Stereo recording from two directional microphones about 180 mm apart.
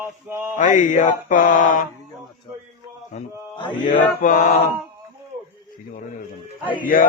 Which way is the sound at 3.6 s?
25° left (ahead or behind).